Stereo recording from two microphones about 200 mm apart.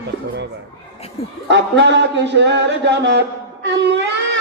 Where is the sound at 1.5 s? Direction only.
60° right (ahead or behind).